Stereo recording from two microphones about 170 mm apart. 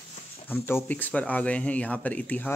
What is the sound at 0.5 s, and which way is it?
Speech, 10° left (ahead or behind).